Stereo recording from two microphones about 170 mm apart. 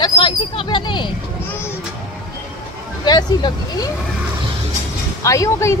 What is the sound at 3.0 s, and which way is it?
Speech, 25° left (ahead or behind).